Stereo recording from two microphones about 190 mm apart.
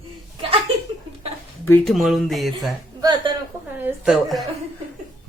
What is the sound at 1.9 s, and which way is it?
Speech, centre (ahead or behind).